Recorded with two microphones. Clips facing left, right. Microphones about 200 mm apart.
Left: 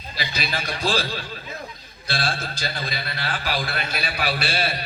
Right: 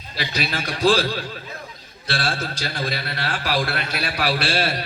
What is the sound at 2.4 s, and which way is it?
A man's voice, 90° right.